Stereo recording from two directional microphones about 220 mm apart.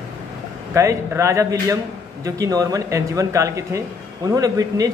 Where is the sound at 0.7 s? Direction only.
15° right (ahead or behind).